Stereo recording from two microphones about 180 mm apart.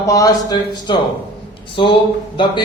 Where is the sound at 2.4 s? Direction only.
25° left (ahead or behind).